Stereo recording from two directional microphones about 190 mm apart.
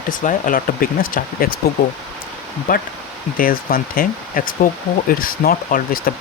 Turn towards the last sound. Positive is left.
turn(degrees=50)  # may be behind; listen again after turning